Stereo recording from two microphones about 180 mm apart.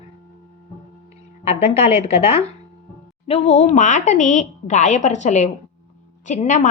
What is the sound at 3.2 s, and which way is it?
A woman's voice, 35° left (ahead or behind).